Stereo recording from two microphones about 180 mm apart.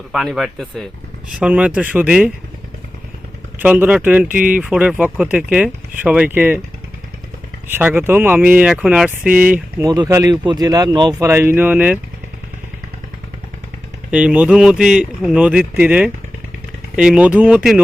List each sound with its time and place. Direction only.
0.1 s speech: centre (ahead or behind)
3.6 s speech: 10° right (ahead or behind)
4.3 s speech: 50° right (ahead or behind)
4.5 s speech: 5° right (ahead or behind)
7.7 s speech: 10° right (ahead or behind)
9.8 s speech: 20° right (ahead or behind)
14.1 s speech: 5° right (ahead or behind)